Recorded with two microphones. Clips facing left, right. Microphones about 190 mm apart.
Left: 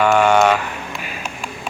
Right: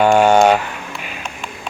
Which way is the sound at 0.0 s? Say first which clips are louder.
Right 3 dB; 30° right (ahead or behind).